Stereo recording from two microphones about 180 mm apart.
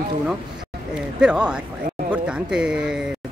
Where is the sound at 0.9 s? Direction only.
5° right (ahead or behind).